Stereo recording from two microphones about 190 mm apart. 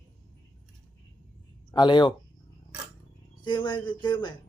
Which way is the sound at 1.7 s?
25° left (ahead or behind).